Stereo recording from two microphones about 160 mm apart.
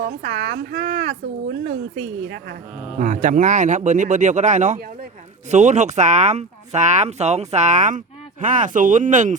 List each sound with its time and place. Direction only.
0.0 s a woman's voice: 90° right
3.0 s speech: 50° right (ahead or behind)